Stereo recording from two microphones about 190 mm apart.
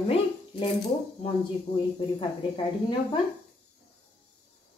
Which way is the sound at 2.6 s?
25° left (ahead or behind).